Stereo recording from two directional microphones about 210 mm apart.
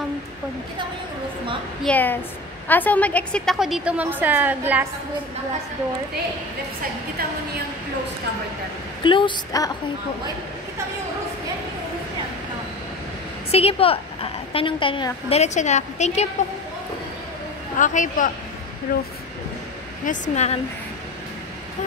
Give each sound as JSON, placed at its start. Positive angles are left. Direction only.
{"t": 1.9, "sound": "a woman's voice", "side_deg": 10}
{"t": 9.0, "sound": "a woman's voice", "side_deg": 25}
{"t": 13.5, "sound": "a woman's voice", "side_deg": 30}
{"t": 17.7, "sound": "a man's voice", "side_deg": 40}
{"t": 20.1, "sound": "a man's voice", "side_deg": 30}